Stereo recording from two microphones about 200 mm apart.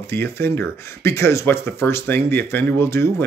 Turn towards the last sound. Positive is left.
turn(degrees=10)  # may be behind; listen again after turning